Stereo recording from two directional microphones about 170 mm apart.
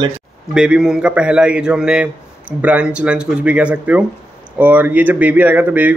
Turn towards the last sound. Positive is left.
turn(degrees=-10)  # may be behind; listen again after turning